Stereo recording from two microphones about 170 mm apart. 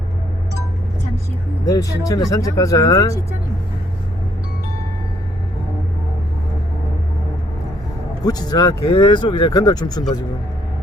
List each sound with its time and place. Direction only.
1.6 s speech: 20° left (ahead or behind)
8.2 s speech: 25° left (ahead or behind)